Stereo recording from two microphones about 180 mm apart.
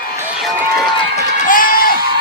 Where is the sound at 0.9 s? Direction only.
40° left (ahead or behind).